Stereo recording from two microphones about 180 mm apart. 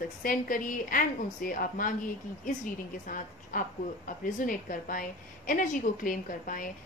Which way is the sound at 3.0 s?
50° left (ahead or behind).